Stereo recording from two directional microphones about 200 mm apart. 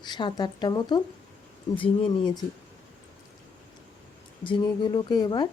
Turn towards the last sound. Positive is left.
turn(degrees=20)  # may be behind; listen again after turning